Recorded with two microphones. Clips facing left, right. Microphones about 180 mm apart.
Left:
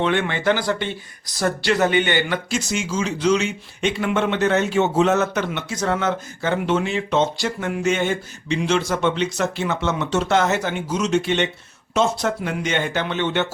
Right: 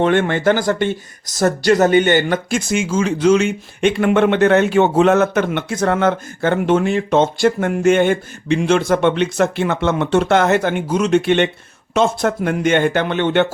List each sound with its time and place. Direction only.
0.0 s speech: 50° right (ahead or behind)